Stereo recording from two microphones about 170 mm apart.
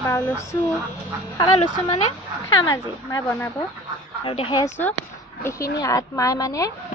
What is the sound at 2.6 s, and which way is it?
Speech, 25° left (ahead or behind).